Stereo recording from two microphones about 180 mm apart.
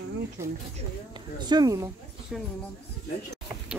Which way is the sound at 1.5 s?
20° right (ahead or behind).